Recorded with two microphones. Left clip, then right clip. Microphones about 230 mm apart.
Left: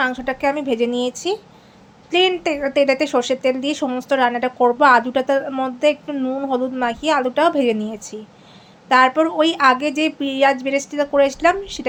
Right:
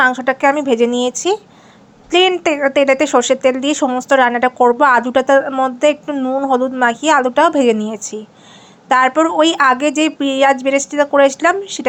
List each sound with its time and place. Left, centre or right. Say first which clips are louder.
0.0 s a woman's voice: right 7 dB; centre